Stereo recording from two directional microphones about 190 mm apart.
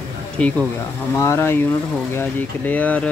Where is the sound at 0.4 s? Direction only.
5° left (ahead or behind).